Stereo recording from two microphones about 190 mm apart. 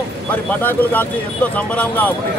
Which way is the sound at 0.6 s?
10° left (ahead or behind).